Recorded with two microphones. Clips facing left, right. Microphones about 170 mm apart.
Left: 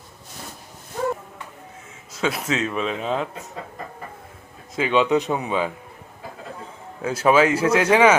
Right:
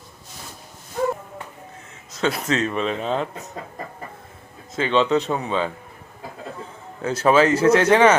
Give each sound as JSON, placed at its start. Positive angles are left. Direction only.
{"t": 2.1, "sound": "a man's voice", "side_deg": 5}
{"t": 4.7, "sound": "speech", "side_deg": 10}
{"t": 7.0, "sound": "speech", "side_deg": 10}